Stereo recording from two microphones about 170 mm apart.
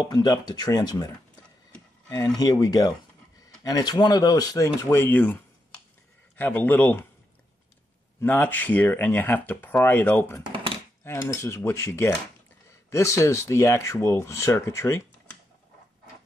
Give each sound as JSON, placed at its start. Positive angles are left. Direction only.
{"t": 0.0, "sound": "speech", "side_deg": 25}
{"t": 8.2, "sound": "speech", "side_deg": 10}